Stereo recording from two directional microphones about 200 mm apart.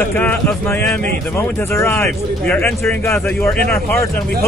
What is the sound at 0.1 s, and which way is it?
A man's voice, 10° left (ahead or behind).